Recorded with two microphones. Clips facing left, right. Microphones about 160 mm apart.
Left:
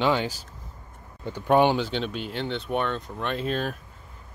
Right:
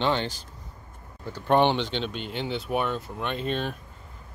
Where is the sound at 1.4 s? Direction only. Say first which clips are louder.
Left 1 dB; 5° left (ahead or behind).